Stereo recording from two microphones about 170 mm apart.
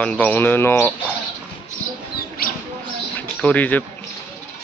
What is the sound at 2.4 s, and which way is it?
Rodents, 60° left (ahead or behind).